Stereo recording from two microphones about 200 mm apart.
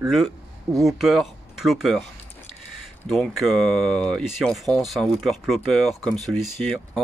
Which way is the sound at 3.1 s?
Centre (ahead or behind).